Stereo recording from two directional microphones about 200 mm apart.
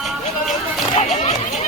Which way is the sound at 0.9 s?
35° left (ahead or behind).